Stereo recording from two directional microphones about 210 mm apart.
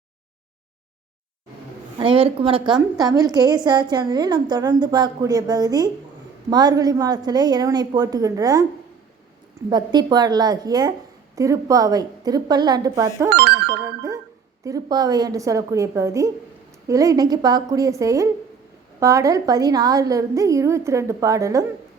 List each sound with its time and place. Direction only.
2.0 s a woman's voice: 25° right (ahead or behind)
9.6 s a woman's voice: 20° right (ahead or behind)
13.3 s speech: 50° right (ahead or behind)
14.6 s a woman's voice: 15° right (ahead or behind)